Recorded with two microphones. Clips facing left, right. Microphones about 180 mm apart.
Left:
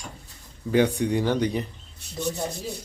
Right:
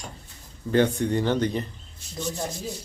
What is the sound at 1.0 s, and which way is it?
Speech, 10° left (ahead or behind).